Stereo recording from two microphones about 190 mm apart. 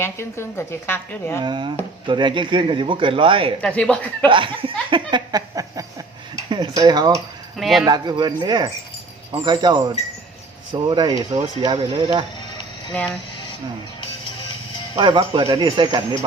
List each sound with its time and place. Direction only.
0.0 s a woman's voice: 15° left (ahead or behind)
1.4 s speech: 25° right (ahead or behind)
3.6 s speech: 5° left (ahead or behind)
4.3 s speech: 25° right (ahead or behind)
7.6 s speech: centre (ahead or behind)
7.9 s speech: 25° right (ahead or behind)
14.9 s speech: 30° right (ahead or behind)